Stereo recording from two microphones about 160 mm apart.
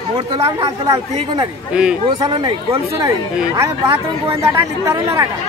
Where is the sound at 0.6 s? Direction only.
20° right (ahead or behind).